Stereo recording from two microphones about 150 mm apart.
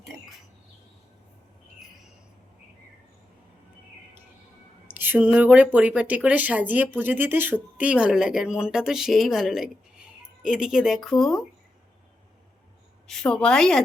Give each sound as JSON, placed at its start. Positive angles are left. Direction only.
{"t": 4.9, "sound": "speech", "side_deg": -10}
{"t": 13.1, "sound": "a woman's voice", "side_deg": 5}